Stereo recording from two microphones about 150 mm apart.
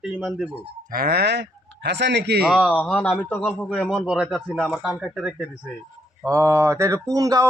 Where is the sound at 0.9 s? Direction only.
90° right.